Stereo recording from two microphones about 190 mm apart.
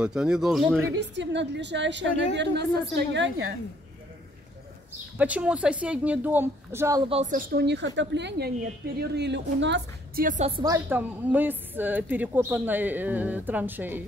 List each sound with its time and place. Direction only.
0.0 s speech: 5° right (ahead or behind)
0.9 s a woman's voice: 70° right (ahead or behind)
5.1 s a woman's voice: 5° right (ahead or behind)
7.1 s a man's voice: 35° right (ahead or behind)
7.3 s a woman's voice: 55° right (ahead or behind)
10.2 s a man's voice: 40° right (ahead or behind)
10.5 s a woman's voice: 20° right (ahead or behind)